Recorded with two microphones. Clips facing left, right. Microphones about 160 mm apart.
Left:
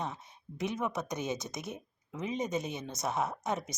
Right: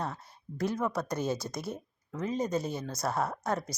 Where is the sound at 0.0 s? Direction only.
20° left (ahead or behind).